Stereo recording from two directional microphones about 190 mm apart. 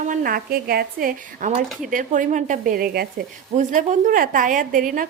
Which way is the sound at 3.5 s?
40° right (ahead or behind).